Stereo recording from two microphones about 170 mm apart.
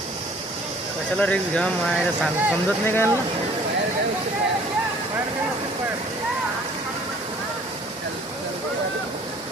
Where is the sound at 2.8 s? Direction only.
15° left (ahead or behind).